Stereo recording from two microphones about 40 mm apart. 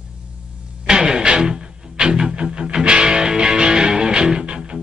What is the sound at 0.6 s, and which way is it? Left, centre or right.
Music, right.